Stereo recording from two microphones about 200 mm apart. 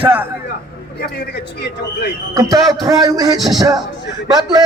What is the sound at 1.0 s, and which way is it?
Speech, 55° left (ahead or behind).